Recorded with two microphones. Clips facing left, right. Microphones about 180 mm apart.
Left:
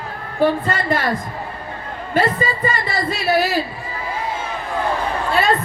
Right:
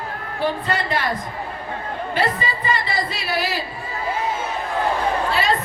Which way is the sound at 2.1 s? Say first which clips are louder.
Left 5 dB; 45° left (ahead or behind).